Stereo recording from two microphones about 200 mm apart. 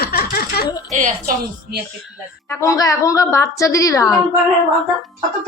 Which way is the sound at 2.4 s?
15° left (ahead or behind).